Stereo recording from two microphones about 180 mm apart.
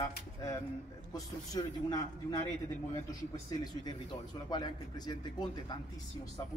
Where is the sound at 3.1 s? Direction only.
20° left (ahead or behind).